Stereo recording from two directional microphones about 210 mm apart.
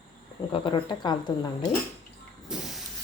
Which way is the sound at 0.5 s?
25° left (ahead or behind).